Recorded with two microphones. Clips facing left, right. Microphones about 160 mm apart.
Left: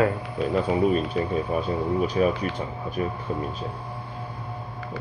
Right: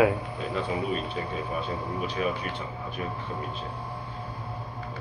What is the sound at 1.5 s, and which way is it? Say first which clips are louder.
Speech: left 7 dB; 45° left (ahead or behind).